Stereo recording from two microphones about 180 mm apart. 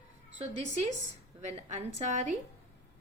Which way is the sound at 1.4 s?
40° right (ahead or behind).